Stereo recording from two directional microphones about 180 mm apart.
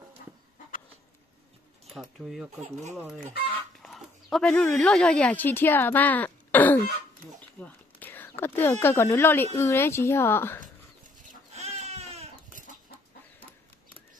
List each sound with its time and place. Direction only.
1.9 s speech: centre (ahead or behind)
3.8 s a woman's voice: centre (ahead or behind)
11.5 s baby cry: 35° right (ahead or behind)